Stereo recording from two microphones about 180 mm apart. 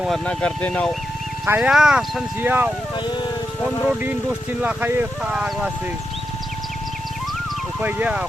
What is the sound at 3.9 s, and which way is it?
Speech, 5° right (ahead or behind).